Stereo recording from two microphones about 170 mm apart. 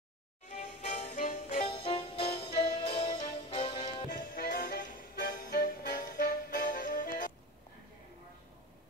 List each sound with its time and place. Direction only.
0.6 s music: 45° left (ahead or behind)
1.7 s music: 30° left (ahead or behind)
4.4 s music: 60° left (ahead or behind)